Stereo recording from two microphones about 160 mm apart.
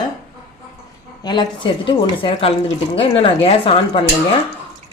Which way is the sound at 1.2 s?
30° left (ahead or behind).